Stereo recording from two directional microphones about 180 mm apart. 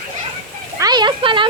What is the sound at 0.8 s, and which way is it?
Speech, 25° right (ahead or behind).